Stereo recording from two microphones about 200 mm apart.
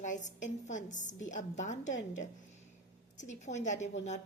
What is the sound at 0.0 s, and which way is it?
A woman's voice, 40° left (ahead or behind).